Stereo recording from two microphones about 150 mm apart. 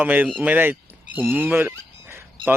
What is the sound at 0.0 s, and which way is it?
Speech, 10° right (ahead or behind).